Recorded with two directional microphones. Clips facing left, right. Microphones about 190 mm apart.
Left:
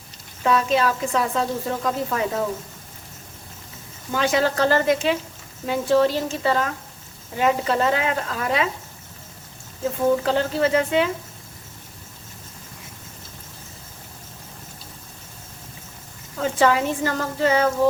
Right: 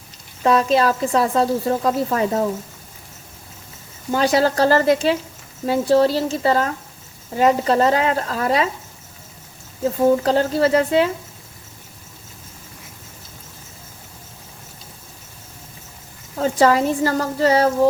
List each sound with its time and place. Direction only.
0.4 s a woman's voice: 35° right (ahead or behind)
4.1 s a woman's voice: 35° right (ahead or behind)
10.2 s a woman's voice: 35° right (ahead or behind)
16.4 s a woman's voice: 40° right (ahead or behind)